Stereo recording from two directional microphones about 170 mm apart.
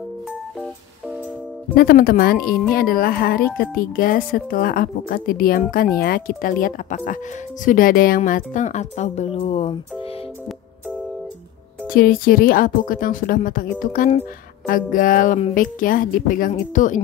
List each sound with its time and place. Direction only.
1.8 s speech: 65° left (ahead or behind); by 10.0 s 35° left (ahead or behind)
11.9 s speech: 60° left (ahead or behind)